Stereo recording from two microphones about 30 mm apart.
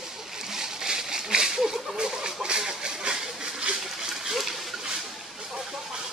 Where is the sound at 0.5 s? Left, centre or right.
Centre; by 3.2 s right.